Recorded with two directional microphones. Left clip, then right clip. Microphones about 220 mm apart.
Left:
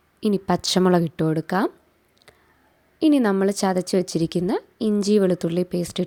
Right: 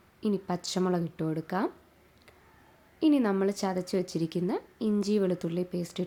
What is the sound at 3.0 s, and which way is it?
Speech, 35° left (ahead or behind).